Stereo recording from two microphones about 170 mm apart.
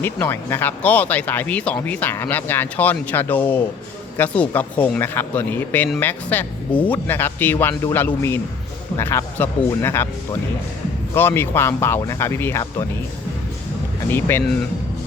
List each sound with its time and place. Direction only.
0.0 s speech: 10° left (ahead or behind)
11.1 s speech: 15° left (ahead or behind)
14.1 s speech: 15° left (ahead or behind)